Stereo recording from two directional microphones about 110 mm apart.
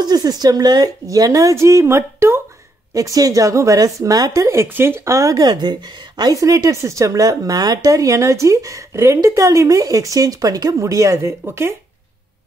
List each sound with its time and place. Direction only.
0.0 s a woman's voice: 35° right (ahead or behind)